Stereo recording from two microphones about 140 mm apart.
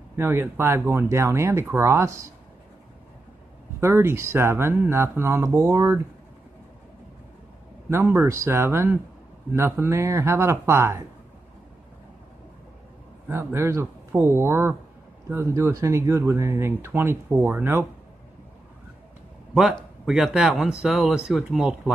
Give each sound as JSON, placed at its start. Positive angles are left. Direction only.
{"t": 0.1, "sound": "speech", "side_deg": -20}
{"t": 3.8, "sound": "speech", "side_deg": -20}
{"t": 7.9, "sound": "speech", "side_deg": -20}
{"t": 13.3, "sound": "speech", "side_deg": -20}
{"t": 19.5, "sound": "speech", "side_deg": 0}